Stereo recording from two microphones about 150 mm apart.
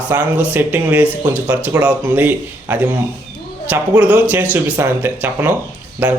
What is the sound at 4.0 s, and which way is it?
Speech, 10° right (ahead or behind).